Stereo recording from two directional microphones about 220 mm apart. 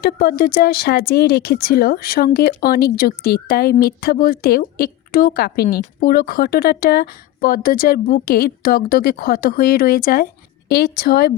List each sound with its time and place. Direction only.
0.0 s speech: 45° left (ahead or behind)